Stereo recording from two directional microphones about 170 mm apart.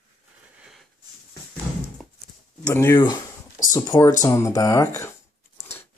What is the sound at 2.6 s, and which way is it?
Speech, 15° left (ahead or behind).